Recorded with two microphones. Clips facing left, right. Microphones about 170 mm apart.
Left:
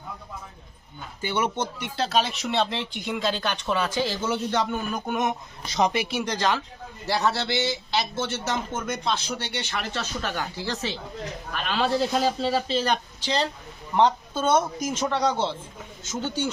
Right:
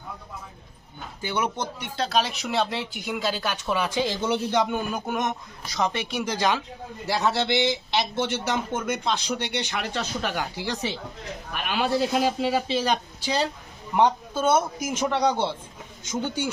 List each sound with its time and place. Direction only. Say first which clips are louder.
1.4 s speech: left 1 dB; 5° left (ahead or behind)
5.6 s speech: left 3 dB; 25° left (ahead or behind)
5.9 s speech: left 2 dB; 5° left (ahead or behind)
6.2 s a man's voice: right 1 dB; 10° right (ahead or behind)